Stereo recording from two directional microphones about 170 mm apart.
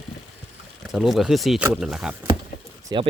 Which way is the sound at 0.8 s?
5° right (ahead or behind).